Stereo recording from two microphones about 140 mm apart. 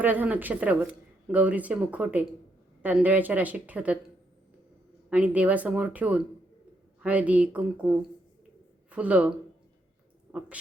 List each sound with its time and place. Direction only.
0.0 s speech: 10° right (ahead or behind)
5.0 s speech: 10° right (ahead or behind)